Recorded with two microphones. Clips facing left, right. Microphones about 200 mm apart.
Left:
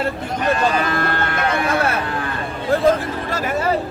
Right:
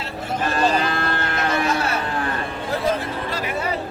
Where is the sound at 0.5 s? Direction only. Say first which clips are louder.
Even; 30° right (ahead or behind).